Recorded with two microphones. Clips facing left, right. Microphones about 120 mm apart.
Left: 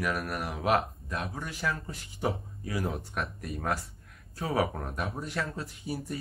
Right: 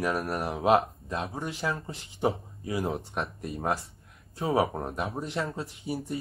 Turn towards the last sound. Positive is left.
turn(degrees=-25)  # may be behind; listen again after turning